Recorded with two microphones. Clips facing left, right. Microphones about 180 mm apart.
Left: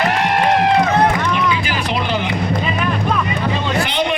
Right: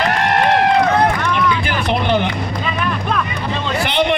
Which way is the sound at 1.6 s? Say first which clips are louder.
Right 2 dB; 60° right (ahead or behind).